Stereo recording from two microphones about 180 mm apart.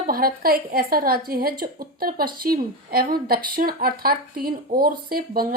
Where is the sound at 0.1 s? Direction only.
55° right (ahead or behind).